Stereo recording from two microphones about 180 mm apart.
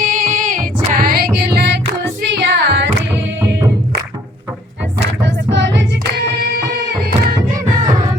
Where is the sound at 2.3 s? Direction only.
75° right (ahead or behind).